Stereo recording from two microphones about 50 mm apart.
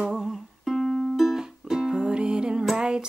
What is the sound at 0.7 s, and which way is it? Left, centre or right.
Music, centre.